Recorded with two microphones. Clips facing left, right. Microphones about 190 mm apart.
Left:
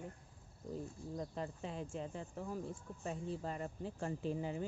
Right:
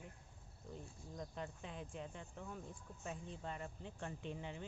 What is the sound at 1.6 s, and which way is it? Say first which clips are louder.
Speech: left 6 dB; 35° left (ahead or behind).